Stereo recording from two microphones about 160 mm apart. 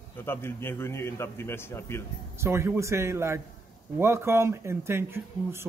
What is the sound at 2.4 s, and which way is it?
Speech, 15° right (ahead or behind).